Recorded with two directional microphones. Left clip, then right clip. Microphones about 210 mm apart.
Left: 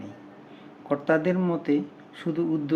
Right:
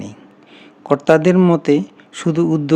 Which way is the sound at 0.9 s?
55° right (ahead or behind).